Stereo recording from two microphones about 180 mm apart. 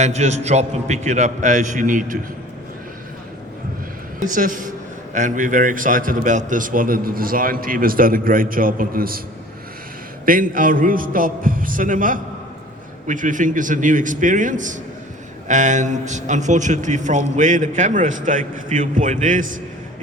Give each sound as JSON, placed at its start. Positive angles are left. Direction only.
{"t": 0.0, "sound": "a man's voice", "side_deg": -40}
{"t": 4.2, "sound": "a man's voice", "side_deg": -45}
{"t": 10.2, "sound": "a man's voice", "side_deg": -50}